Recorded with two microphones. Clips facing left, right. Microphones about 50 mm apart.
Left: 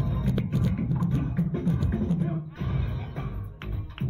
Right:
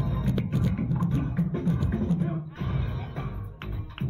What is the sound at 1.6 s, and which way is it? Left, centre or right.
Music, centre.